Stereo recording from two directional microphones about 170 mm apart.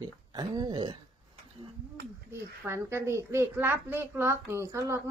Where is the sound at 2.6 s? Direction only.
15° right (ahead or behind).